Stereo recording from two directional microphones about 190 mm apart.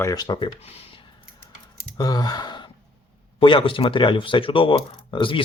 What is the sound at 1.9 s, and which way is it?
Speech, 20° left (ahead or behind).